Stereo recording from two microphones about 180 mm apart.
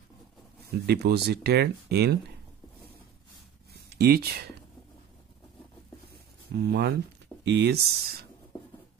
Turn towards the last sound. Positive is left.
turn(degrees=-65)  # may be behind; listen again after turning